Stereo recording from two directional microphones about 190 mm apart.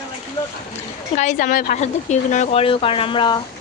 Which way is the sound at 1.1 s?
40° left (ahead or behind).